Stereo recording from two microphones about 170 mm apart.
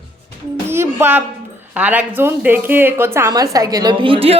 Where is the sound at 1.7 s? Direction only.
10° right (ahead or behind).